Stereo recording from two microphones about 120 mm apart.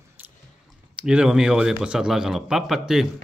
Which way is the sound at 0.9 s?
5° right (ahead or behind).